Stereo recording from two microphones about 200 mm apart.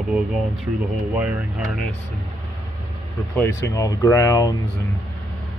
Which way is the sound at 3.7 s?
15° left (ahead or behind).